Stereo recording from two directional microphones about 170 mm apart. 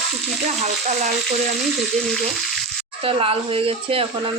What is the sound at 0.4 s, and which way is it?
Speech, 45° right (ahead or behind).